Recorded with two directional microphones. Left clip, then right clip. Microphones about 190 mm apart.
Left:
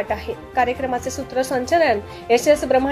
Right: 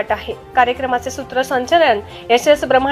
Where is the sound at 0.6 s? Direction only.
Centre (ahead or behind).